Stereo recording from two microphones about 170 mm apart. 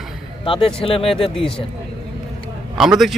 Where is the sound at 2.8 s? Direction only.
Centre (ahead or behind).